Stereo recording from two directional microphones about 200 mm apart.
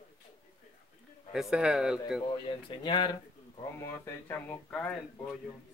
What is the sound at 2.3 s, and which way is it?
Speech, 25° left (ahead or behind).